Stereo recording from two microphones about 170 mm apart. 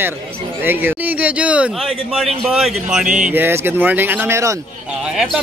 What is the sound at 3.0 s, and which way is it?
Speech, 50° right (ahead or behind).